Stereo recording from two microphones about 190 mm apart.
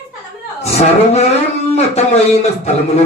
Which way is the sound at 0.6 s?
35° left (ahead or behind).